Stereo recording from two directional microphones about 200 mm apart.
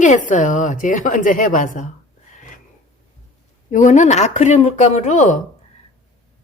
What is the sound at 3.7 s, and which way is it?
A woman's voice, 40° left (ahead or behind).